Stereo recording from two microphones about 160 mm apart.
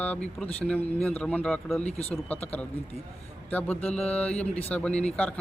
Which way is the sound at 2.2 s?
10° left (ahead or behind).